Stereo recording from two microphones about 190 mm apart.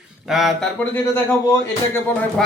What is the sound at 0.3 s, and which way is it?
Speech, centre (ahead or behind).